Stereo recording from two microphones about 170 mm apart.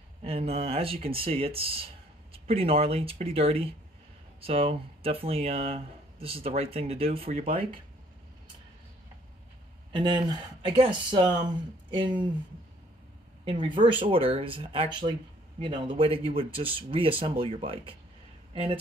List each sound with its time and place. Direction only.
0.2 s speech: 35° right (ahead or behind)
9.9 s speech: 25° right (ahead or behind)
13.5 s speech: 30° right (ahead or behind)